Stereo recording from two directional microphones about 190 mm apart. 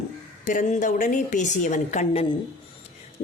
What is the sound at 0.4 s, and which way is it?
A woman's voice, 40° left (ahead or behind).